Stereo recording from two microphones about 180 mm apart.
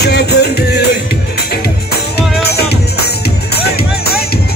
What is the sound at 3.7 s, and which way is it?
Music, 60° left (ahead or behind).